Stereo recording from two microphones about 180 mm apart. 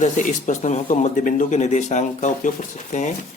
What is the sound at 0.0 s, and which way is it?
Speech, 45° left (ahead or behind).